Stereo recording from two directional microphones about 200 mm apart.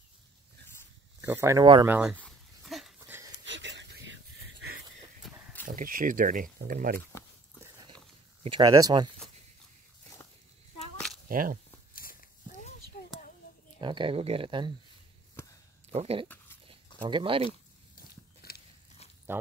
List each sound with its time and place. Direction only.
1.2 s speech: 15° right (ahead or behind)
2.1 s dog: centre (ahead or behind)
3.4 s a sound: 65° right (ahead or behind)
5.2 s a sound: centre (ahead or behind)
5.7 s speech: 45° right (ahead or behind)
8.5 s speech: 20° right (ahead or behind)
11.2 s speech: 45° right (ahead or behind)
11.9 s a sound: 45° left (ahead or behind)
13.7 s speech: 25° right (ahead or behind)
15.9 s speech: 30° right (ahead or behind)
16.6 s a sound: 25° right (ahead or behind)
18.4 s biting: 50° left (ahead or behind)
19.3 s speech: 10° right (ahead or behind)